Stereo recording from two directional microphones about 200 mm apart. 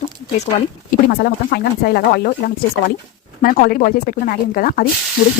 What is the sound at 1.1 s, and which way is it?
Speech, 50° left (ahead or behind).